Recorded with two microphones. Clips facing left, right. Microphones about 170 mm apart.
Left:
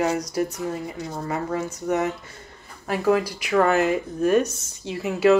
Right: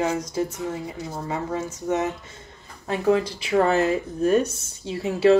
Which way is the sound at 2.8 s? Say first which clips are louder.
Even; 25° right (ahead or behind).